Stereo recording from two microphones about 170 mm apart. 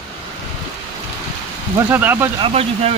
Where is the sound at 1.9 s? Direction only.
10° right (ahead or behind).